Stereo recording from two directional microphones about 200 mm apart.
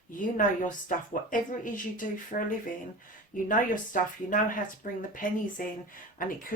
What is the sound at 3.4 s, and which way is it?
Speech, 40° left (ahead or behind).